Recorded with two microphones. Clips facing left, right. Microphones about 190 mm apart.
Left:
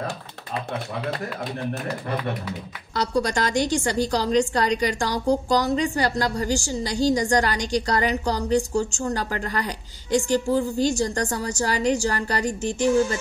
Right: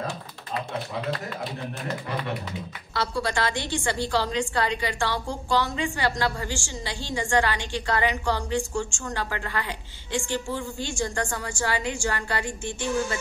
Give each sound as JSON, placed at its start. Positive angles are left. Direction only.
{"t": 3.2, "sound": "a woman's voice", "side_deg": 40}